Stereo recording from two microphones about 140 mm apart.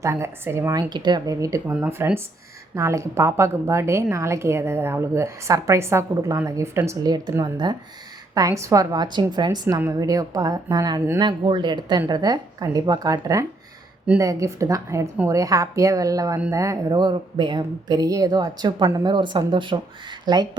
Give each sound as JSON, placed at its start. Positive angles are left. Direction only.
{"t": 0.0, "sound": "a woman's voice", "side_deg": -20}
{"t": 11.2, "sound": "a woman's voice", "side_deg": -35}